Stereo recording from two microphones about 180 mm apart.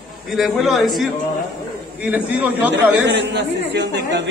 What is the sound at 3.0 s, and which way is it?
A man's voice, 75° right (ahead or behind).